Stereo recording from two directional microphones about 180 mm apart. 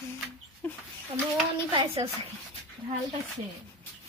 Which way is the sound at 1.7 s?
30° right (ahead or behind).